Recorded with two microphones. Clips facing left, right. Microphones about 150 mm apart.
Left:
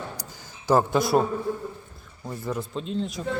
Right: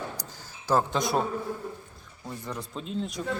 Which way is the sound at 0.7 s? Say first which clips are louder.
Left 5 dB; 10° left (ahead or behind).